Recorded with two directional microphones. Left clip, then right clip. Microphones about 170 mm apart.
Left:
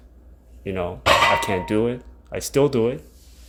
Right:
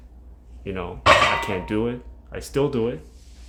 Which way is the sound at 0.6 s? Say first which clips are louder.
Right 1 dB; 20° left (ahead or behind).